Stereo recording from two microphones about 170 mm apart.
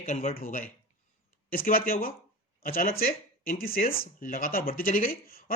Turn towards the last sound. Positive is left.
turn(degrees=60)  # may be behind; listen again after turning